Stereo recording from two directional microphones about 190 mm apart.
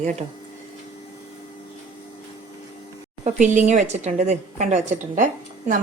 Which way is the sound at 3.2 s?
40° right (ahead or behind).